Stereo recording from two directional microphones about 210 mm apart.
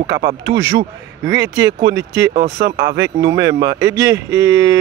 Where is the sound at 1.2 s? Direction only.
60° right (ahead or behind).